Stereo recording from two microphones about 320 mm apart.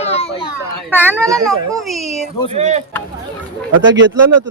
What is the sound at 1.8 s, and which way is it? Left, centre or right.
Speech, centre.